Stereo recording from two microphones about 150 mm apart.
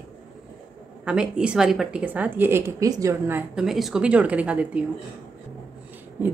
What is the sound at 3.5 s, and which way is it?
A woman's voice, centre (ahead or behind).